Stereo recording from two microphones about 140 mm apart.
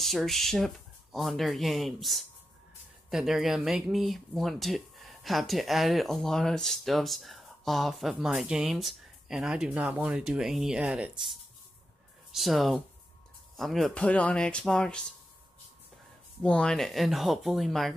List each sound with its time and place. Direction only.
0.0 s speech: centre (ahead or behind)
16.4 s speech: 5° left (ahead or behind)